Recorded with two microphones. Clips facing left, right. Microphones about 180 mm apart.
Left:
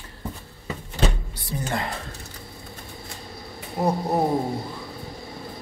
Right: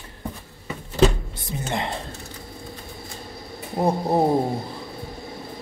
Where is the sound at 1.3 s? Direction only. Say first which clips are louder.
Even; 20° right (ahead or behind).